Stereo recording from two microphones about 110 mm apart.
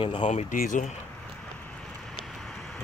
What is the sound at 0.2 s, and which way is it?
Speech, 90° left.